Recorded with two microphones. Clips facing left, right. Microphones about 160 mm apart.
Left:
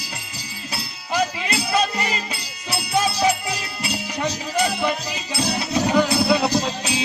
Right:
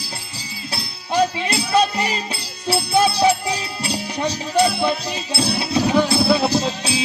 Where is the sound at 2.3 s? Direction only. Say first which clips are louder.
Right 6 dB; 30° right (ahead or behind).